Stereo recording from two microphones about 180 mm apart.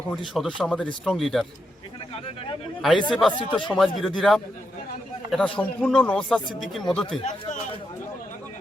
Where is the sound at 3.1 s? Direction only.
5° left (ahead or behind).